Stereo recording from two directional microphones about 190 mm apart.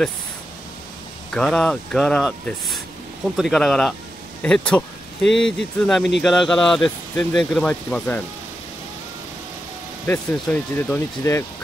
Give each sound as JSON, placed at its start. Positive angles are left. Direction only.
{"t": 1.3, "sound": "speech", "side_deg": 5}
{"t": 10.0, "sound": "speech", "side_deg": 10}